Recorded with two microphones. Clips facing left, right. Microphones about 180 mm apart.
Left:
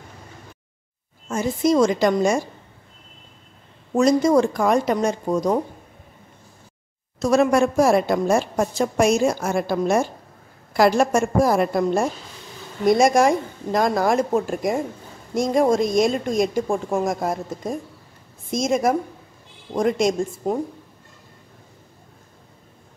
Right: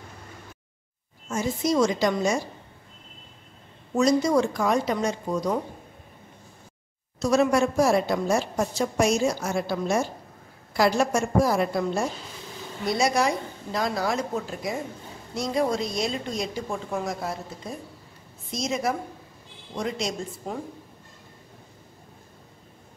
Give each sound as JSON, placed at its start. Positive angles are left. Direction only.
{"t": 1.3, "sound": "a woman's voice", "side_deg": 55}
{"t": 3.9, "sound": "a woman's voice", "side_deg": 50}
{"t": 7.2, "sound": "a woman's voice", "side_deg": 55}